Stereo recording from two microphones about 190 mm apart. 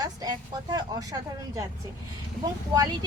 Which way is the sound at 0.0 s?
20° right (ahead or behind).